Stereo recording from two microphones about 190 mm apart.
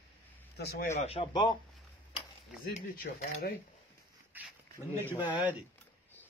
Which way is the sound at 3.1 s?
65° left (ahead or behind).